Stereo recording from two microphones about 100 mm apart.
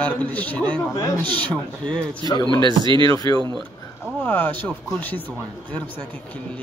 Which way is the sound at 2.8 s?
50° right (ahead or behind).